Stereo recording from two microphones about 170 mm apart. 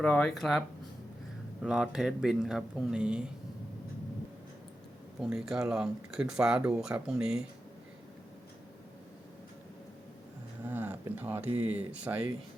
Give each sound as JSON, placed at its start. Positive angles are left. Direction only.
{"t": 0.0, "sound": "speech", "side_deg": 5}
{"t": 1.6, "sound": "speech", "side_deg": -5}
{"t": 5.2, "sound": "speech", "side_deg": -5}
{"t": 10.7, "sound": "a sound", "side_deg": -10}
{"t": 11.4, "sound": "speech", "side_deg": -40}
{"t": 11.7, "sound": "speech", "side_deg": -10}